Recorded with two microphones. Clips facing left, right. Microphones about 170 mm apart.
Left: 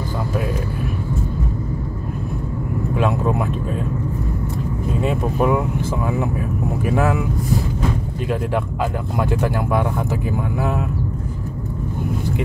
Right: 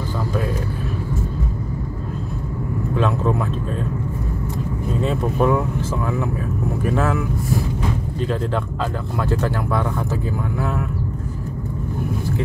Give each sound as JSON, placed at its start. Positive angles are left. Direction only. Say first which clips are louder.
{"t": 3.0, "sound": "vehicle", "louder": "left 1 dB", "side_deg": 15}
{"t": 5.0, "sound": "speech", "louder": "even", "side_deg": 10}
{"t": 6.8, "sound": "speech", "louder": "left 2 dB", "side_deg": 15}
{"t": 9.2, "sound": "speech", "louder": "left 1 dB", "side_deg": 15}